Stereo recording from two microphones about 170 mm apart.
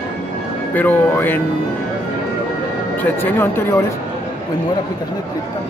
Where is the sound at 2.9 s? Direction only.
10° left (ahead or behind).